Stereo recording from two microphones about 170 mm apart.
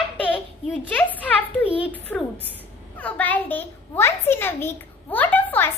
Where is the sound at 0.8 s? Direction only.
10° left (ahead or behind).